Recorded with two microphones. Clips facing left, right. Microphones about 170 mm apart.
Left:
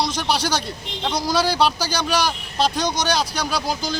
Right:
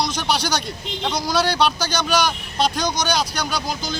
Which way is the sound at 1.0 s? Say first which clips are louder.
Even; 5° left (ahead or behind).